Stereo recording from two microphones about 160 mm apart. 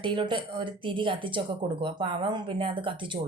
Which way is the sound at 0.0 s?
30° right (ahead or behind).